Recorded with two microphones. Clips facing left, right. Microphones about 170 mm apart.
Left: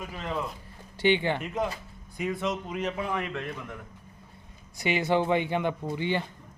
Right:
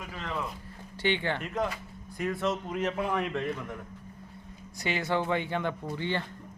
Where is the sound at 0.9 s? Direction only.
15° left (ahead or behind).